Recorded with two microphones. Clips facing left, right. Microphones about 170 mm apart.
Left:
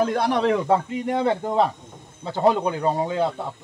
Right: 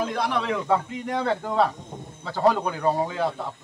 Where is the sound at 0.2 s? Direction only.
40° left (ahead or behind).